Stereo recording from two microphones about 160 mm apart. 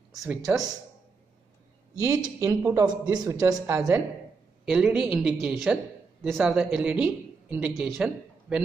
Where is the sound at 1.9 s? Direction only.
20° right (ahead or behind).